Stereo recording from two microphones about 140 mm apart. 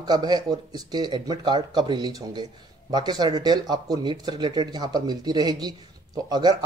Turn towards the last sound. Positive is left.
turn(degrees=-30)  # may be behind; listen again after turning